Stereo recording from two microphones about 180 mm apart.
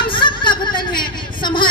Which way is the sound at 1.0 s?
25° left (ahead or behind).